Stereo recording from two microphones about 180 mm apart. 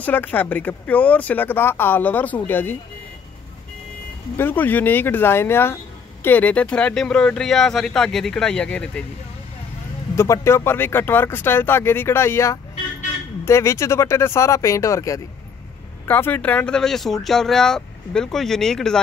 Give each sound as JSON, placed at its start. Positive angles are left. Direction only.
{"t": 0.0, "sound": "speech", "side_deg": 10}
{"t": 4.4, "sound": "speech", "side_deg": 10}
{"t": 10.1, "sound": "speech", "side_deg": 15}